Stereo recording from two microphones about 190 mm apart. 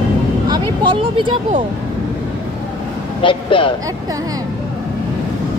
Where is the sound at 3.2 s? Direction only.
25° left (ahead or behind).